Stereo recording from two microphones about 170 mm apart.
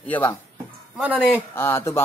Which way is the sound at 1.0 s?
10° right (ahead or behind).